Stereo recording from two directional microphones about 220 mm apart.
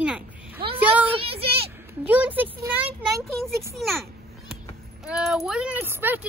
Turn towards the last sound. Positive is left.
turn(degrees=-10)  # may be behind; listen again after turning